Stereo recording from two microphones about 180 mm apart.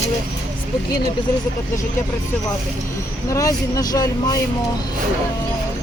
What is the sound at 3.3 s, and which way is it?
Speech, 20° left (ahead or behind).